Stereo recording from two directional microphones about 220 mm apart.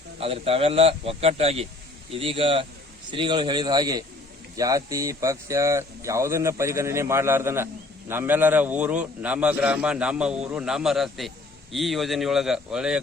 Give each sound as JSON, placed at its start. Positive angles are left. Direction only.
{"t": 0.2, "sound": "a man's voice", "side_deg": -25}